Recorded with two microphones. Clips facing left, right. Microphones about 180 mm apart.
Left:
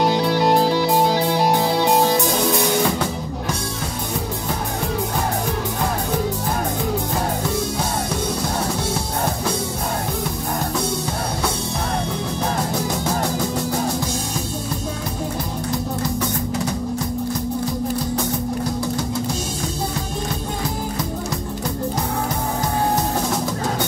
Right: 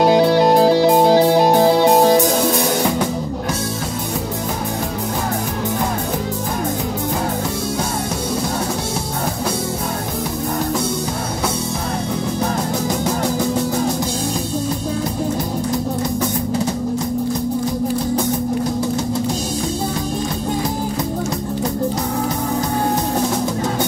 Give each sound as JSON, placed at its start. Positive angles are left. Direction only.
{"t": 0.1, "sound": "music", "side_deg": -45}